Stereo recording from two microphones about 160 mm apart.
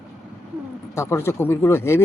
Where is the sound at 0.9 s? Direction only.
15° left (ahead or behind).